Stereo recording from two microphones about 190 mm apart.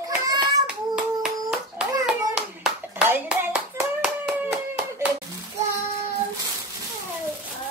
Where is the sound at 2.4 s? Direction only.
5° right (ahead or behind).